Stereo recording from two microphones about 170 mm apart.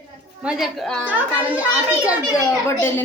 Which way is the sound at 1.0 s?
10° right (ahead or behind).